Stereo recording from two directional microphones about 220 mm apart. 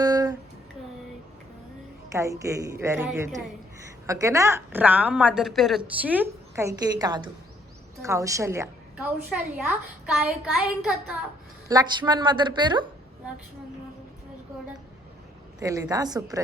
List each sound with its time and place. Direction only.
0.0 s a sound: 15° right (ahead or behind)
2.1 s a woman's voice: 15° right (ahead or behind)
11.7 s a woman's voice: 20° right (ahead or behind)
15.6 s a woman's voice: 15° right (ahead or behind)